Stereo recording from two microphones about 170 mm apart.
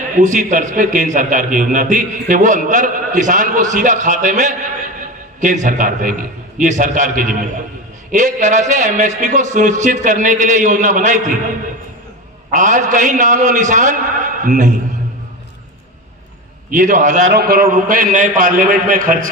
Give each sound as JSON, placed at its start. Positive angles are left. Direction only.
{"t": 0.2, "sound": "a man's voice", "side_deg": -45}
{"t": 16.7, "sound": "a man's voice", "side_deg": -45}
{"t": 17.3, "sound": "a man's voice", "side_deg": -65}